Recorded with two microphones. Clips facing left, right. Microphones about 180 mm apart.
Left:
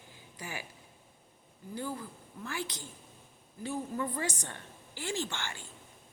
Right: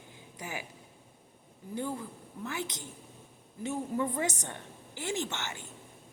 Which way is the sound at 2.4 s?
20° right (ahead or behind).